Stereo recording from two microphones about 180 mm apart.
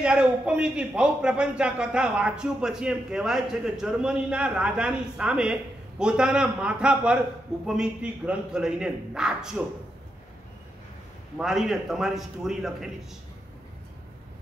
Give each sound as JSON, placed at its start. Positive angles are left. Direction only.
{"t": 0.0, "sound": "a man's voice", "side_deg": -5}
{"t": 11.3, "sound": "a man's voice", "side_deg": -5}